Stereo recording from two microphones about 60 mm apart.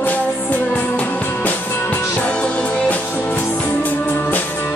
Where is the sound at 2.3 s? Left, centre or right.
Centre.